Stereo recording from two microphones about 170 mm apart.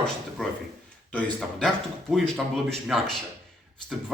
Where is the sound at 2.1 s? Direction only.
Centre (ahead or behind).